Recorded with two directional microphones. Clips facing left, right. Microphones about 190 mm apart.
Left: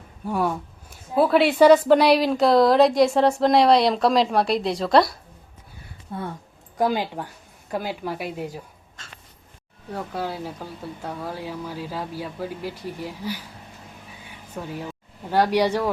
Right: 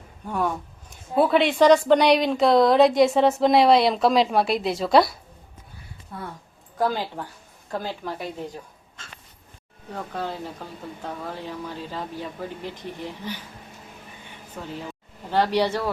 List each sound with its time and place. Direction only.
0.3 s a woman's voice: 10° left (ahead or behind)
6.1 s speech: 25° left (ahead or behind)
6.7 s speech: 15° left (ahead or behind)
9.9 s speech: 10° left (ahead or behind)
14.3 s a sound: 10° left (ahead or behind)
15.3 s speech: 10° left (ahead or behind)